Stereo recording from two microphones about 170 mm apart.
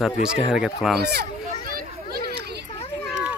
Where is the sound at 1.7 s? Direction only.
60° right (ahead or behind).